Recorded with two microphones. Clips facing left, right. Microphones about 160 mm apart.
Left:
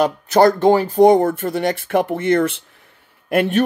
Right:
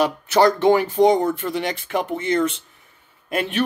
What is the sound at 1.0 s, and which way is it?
Speech, 55° left (ahead or behind).